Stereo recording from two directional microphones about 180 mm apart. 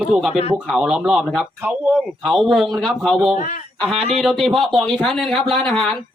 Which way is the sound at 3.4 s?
50° left (ahead or behind).